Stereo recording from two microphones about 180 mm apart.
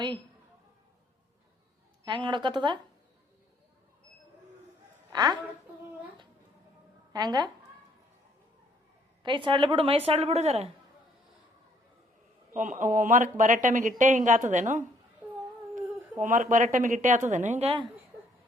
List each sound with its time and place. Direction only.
2.0 s a woman's voice: 25° right (ahead or behind)
5.1 s a woman's voice: 25° right (ahead or behind)
7.1 s speech: 20° right (ahead or behind)
9.2 s a woman's voice: 25° right (ahead or behind)
12.5 s a woman's voice: 45° right (ahead or behind)
15.7 s a sound: 15° right (ahead or behind)
16.2 s a woman's voice: 45° right (ahead or behind)